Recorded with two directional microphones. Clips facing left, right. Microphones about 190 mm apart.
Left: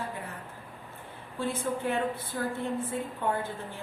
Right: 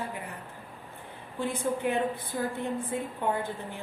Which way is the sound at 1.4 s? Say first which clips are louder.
Right 1 dB; 15° right (ahead or behind).